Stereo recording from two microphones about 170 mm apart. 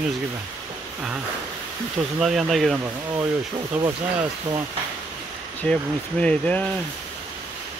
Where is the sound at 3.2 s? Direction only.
20° right (ahead or behind).